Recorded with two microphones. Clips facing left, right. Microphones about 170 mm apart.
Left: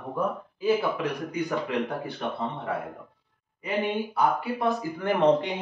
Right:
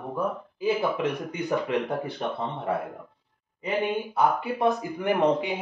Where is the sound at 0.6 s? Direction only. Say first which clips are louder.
Left 1 dB; 25° right (ahead or behind).